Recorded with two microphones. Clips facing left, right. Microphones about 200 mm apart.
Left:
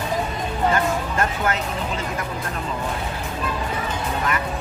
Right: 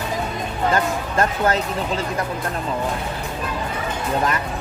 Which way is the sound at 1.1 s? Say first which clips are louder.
Right 4 dB; 35° right (ahead or behind).